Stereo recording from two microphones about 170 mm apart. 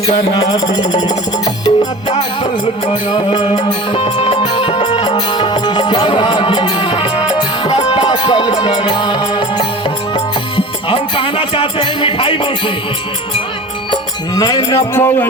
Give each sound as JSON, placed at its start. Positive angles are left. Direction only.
{"t": 0.1, "sound": "music", "side_deg": 25}
{"t": 10.8, "sound": "music", "side_deg": 30}
{"t": 13.9, "sound": "music", "side_deg": 25}